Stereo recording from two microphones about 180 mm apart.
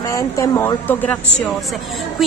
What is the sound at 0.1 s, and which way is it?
A woman's voice, 15° left (ahead or behind).